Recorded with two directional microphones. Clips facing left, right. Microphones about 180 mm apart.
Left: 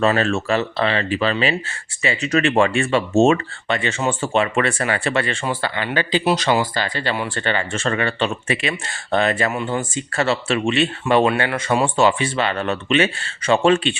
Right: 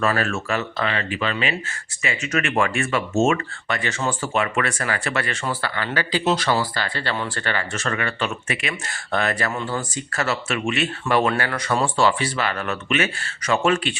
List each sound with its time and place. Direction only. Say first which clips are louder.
0.0 s speech: left 4 dB; 25° left (ahead or behind)